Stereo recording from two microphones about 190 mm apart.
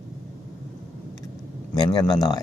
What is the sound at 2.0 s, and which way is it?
Speech, 20° left (ahead or behind).